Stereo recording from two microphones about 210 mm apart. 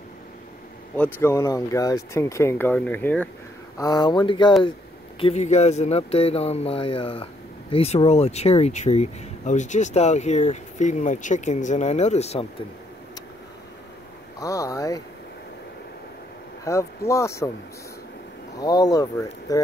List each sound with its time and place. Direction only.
0.9 s speech: 10° left (ahead or behind)
5.2 s speech: 30° left (ahead or behind)
14.4 s speech: 15° left (ahead or behind)
16.6 s speech: 15° left (ahead or behind)
18.6 s speech: 20° left (ahead or behind)